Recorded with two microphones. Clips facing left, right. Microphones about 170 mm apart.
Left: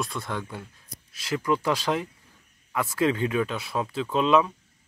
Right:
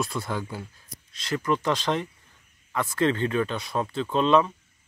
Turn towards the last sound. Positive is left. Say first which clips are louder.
# right 1 dB
turn(degrees=5)  # may be behind; listen again after turning